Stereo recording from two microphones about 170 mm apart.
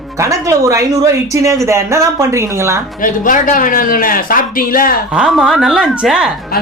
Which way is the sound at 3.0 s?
50° left (ahead or behind).